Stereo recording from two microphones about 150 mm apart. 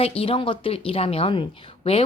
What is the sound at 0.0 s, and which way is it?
Speech, 40° left (ahead or behind).